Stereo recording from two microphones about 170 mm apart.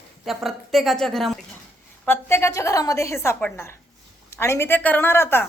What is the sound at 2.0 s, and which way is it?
A woman's voice, 15° left (ahead or behind).